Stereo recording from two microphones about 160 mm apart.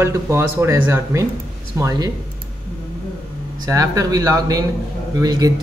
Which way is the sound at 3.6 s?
20° right (ahead or behind).